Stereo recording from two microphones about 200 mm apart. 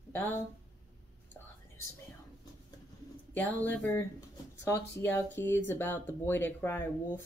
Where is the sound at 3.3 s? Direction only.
10° left (ahead or behind).